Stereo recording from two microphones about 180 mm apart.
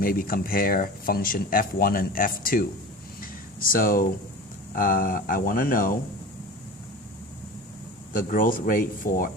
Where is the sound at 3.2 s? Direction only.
50° left (ahead or behind).